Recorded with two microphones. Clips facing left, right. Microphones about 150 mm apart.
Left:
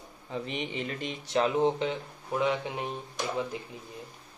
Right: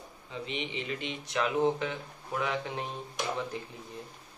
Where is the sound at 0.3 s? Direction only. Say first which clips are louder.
Left 3 dB; 45° left (ahead or behind); by 2.5 s 20° left (ahead or behind).